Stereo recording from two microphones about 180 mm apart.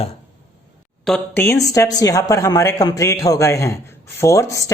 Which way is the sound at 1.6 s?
20° left (ahead or behind).